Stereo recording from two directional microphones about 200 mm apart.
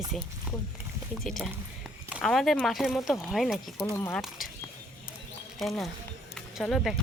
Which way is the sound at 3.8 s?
10° left (ahead or behind).